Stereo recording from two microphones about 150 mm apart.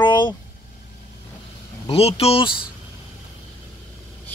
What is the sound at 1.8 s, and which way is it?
Speech, 40° left (ahead or behind).